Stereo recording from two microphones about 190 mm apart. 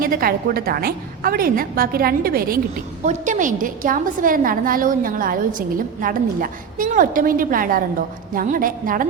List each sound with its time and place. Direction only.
0.0 s a woman's voice: 50° right (ahead or behind)